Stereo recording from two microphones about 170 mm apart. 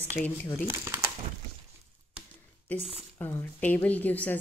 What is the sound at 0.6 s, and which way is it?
Speech, 15° right (ahead or behind).